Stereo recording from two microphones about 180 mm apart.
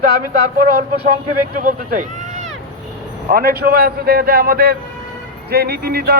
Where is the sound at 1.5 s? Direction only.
50° right (ahead or behind).